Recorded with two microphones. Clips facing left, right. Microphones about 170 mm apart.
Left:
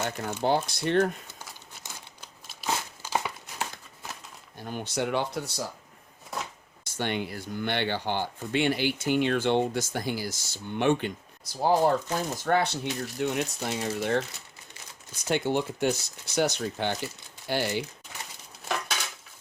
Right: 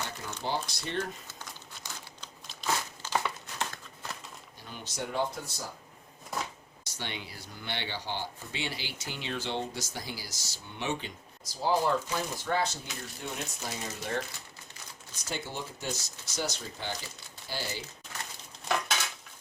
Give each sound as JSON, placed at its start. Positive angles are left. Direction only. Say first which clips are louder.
{"t": 0.0, "sound": "speech", "louder": "left 8 dB", "side_deg": 55}
{"t": 2.2, "sound": "crumpling", "louder": "left 1 dB", "side_deg": 10}
{"t": 4.6, "sound": "speech", "louder": "left 9 dB", "side_deg": 55}
{"t": 6.8, "sound": "speech", "louder": "left 10 dB", "side_deg": 50}
{"t": 15.3, "sound": "speech", "louder": "left 11 dB", "side_deg": 65}
{"t": 18.7, "sound": "cutlery", "louder": "right 1 dB", "side_deg": 5}